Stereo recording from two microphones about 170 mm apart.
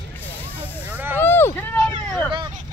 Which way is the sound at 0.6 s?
10° right (ahead or behind).